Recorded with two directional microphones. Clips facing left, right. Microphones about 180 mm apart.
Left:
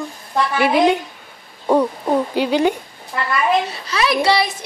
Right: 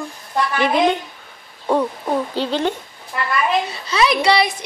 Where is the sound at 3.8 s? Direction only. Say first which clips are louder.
Right 3 dB; 25° right (ahead or behind).